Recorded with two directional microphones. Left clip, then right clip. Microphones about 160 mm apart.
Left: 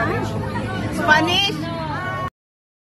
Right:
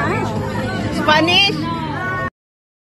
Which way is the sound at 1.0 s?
Centre (ahead or behind).